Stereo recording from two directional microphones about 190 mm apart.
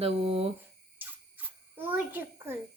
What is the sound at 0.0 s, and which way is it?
Speech, 30° right (ahead or behind).